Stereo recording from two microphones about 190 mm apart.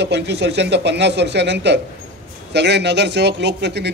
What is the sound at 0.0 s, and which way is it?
A man's voice, 65° right (ahead or behind).